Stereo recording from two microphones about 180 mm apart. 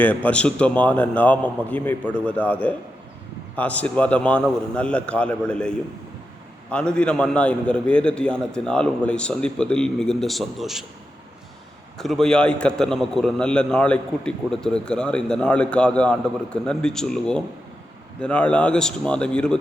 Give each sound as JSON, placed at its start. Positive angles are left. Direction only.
{"t": 0.0, "sound": "a man's voice", "side_deg": 10}
{"t": 11.9, "sound": "a man's voice", "side_deg": 0}